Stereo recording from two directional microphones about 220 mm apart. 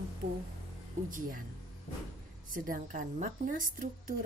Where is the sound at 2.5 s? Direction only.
40° right (ahead or behind).